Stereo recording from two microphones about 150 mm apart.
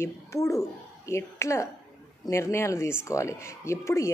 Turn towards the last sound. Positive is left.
turn(degrees=20)  # may be behind; listen again after turning